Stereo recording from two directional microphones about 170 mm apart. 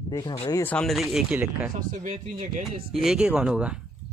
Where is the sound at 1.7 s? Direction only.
50° right (ahead or behind).